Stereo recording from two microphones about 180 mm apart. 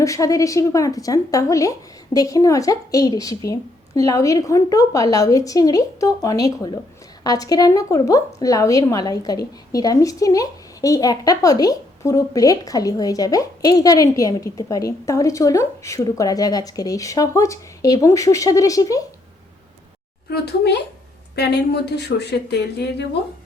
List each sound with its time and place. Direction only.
0.0 s a woman's voice: 20° left (ahead or behind)
20.3 s a woman's voice: 60° left (ahead or behind)